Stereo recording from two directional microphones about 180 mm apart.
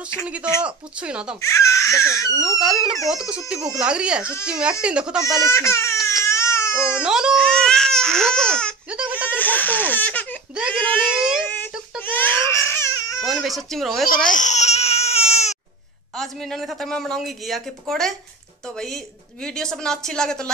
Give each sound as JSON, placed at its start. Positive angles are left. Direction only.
{"t": 0.7, "sound": "speech", "side_deg": -5}
{"t": 1.4, "sound": "speech", "side_deg": 15}
{"t": 2.4, "sound": "speech", "side_deg": 0}
{"t": 5.5, "sound": "speech", "side_deg": 15}
{"t": 6.2, "sound": "baby cry", "side_deg": 15}
{"t": 7.0, "sound": "baby cry", "side_deg": -5}
{"t": 9.1, "sound": "speech", "side_deg": 10}
{"t": 11.1, "sound": "child singing", "side_deg": -5}
{"t": 11.4, "sound": "wail", "side_deg": 10}
{"t": 12.0, "sound": "baby cry", "side_deg": 10}
{"t": 13.2, "sound": "speech", "side_deg": 0}
{"t": 14.0, "sound": "baby cry", "side_deg": 50}
{"t": 16.2, "sound": "speech", "side_deg": 0}
{"t": 19.4, "sound": "speech", "side_deg": 5}